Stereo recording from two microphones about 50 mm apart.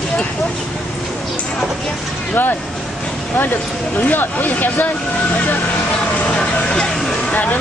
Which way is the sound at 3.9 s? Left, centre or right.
Left.